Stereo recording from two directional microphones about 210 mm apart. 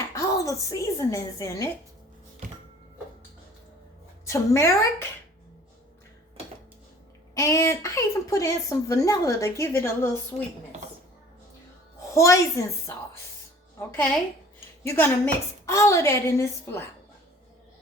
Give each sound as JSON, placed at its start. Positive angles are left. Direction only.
{"t": 0.1, "sound": "speech", "side_deg": 15}
{"t": 4.3, "sound": "a woman's voice", "side_deg": 15}
{"t": 7.3, "sound": "a woman's voice", "side_deg": 15}
{"t": 12.1, "sound": "a woman's voice", "side_deg": 15}
{"t": 13.7, "sound": "a woman's voice", "side_deg": 10}